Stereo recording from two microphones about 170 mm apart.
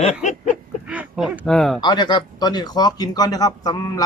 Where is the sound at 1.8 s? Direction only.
25° left (ahead or behind).